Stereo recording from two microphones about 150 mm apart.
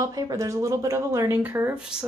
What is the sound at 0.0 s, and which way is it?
Speech, 25° right (ahead or behind).